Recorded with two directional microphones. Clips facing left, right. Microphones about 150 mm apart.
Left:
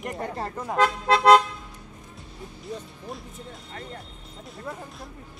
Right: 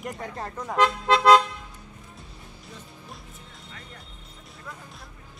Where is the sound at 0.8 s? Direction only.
35° left (ahead or behind).